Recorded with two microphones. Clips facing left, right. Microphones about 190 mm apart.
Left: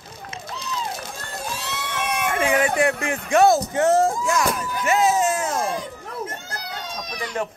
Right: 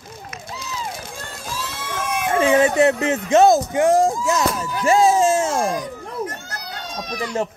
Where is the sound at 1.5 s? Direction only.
65° left (ahead or behind).